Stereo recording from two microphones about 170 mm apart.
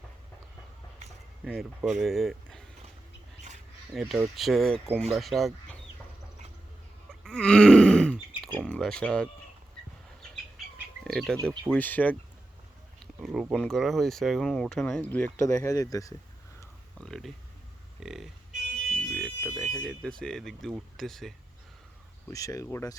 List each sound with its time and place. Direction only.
1.5 s speech: centre (ahead or behind)
3.9 s speech: centre (ahead or behind)
7.3 s groan: 5° left (ahead or behind)
8.4 s a sound: 5° left (ahead or behind)
11.0 s speech: centre (ahead or behind)
13.2 s speech: centre (ahead or behind); by 16.1 s 20° left (ahead or behind)
16.6 s a sound: 5° left (ahead or behind)
18.0 s music: centre (ahead or behind)
18.9 s a sound: 5° left (ahead or behind)
19.5 s speech: centre (ahead or behind)
22.3 s speech: 20° left (ahead or behind)